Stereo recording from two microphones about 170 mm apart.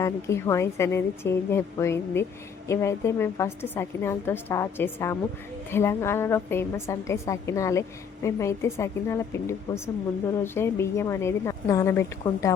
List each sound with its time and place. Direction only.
0.0 s a woman's voice: 15° left (ahead or behind)